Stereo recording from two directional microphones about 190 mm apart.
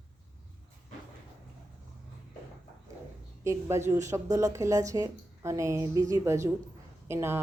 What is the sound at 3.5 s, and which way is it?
Speech, 15° right (ahead or behind).